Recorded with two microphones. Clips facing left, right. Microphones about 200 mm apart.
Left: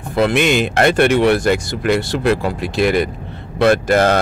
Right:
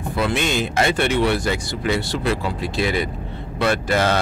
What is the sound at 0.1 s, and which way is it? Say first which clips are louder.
Speech: left 7 dB; 70° left (ahead or behind).